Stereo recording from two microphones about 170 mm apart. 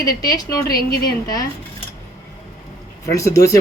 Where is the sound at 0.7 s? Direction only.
60° left (ahead or behind).